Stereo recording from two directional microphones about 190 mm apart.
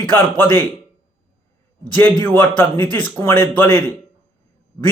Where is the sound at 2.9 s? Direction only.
10° left (ahead or behind).